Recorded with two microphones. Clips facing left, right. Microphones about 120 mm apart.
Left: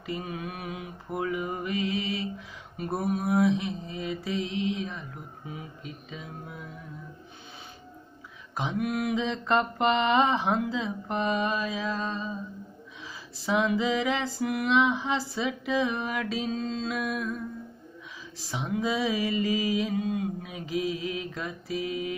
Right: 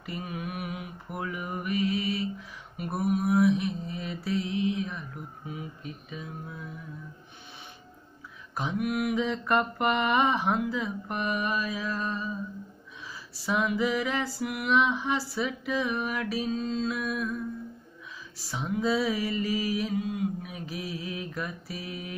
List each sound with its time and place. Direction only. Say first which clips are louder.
0.0 s mantra: left 2 dB; 25° left (ahead or behind)
2.8 s mantra: right 1 dB; 30° left (ahead or behind)
8.5 s mantra: even; 25° left (ahead or behind)
13.5 s mantra: left 2 dB; 25° left (ahead or behind)
18.5 s mantra: right 1 dB; 20° left (ahead or behind)